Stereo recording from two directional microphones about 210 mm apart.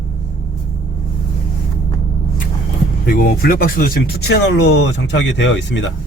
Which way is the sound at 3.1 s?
45° left (ahead or behind).